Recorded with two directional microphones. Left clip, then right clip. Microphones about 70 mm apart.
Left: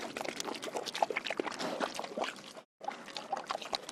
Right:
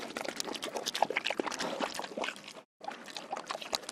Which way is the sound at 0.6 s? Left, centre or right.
Right.